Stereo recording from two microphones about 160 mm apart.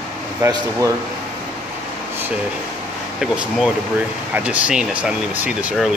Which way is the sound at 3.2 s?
Centre (ahead or behind).